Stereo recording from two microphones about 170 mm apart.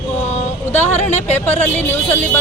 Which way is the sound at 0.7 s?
40° left (ahead or behind).